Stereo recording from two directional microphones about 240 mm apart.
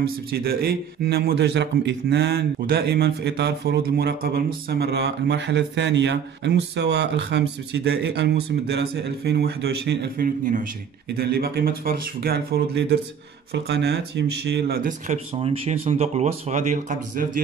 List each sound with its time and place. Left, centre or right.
0.0 s a man's voice: right